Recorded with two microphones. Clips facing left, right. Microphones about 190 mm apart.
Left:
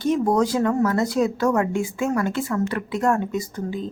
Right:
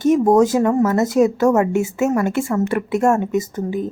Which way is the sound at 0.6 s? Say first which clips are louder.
Right 4 dB; 20° right (ahead or behind).